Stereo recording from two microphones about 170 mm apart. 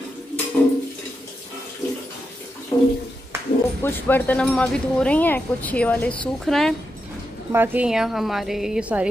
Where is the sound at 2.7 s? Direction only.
15° left (ahead or behind).